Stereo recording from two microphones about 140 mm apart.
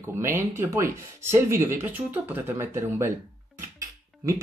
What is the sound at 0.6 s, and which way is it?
Speech, 20° right (ahead or behind).